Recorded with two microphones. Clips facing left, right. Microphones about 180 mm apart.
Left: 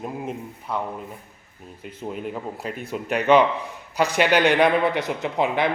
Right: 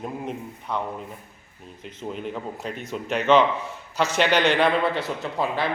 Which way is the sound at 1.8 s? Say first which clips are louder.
Left 1 dB; 5° left (ahead or behind).